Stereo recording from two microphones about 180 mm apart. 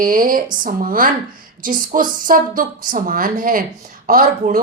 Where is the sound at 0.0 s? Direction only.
50° right (ahead or behind).